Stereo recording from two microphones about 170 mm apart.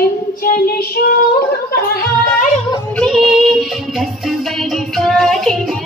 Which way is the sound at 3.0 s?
Centre (ahead or behind).